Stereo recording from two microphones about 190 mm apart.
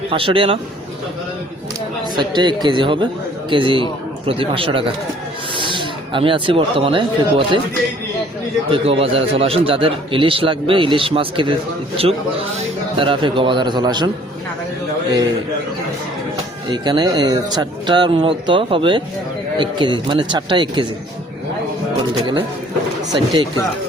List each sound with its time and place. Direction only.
0.1 s a man's voice: 30° right (ahead or behind)
2.1 s a man's voice: 25° right (ahead or behind)
8.7 s a man's voice: 30° right (ahead or behind)
12.5 s a man's voice: 30° right (ahead or behind)
16.7 s a man's voice: 25° right (ahead or behind)
22.2 s a man's voice: 25° right (ahead or behind)